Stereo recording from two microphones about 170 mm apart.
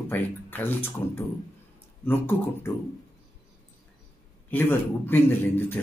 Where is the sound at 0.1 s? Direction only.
10° left (ahead or behind).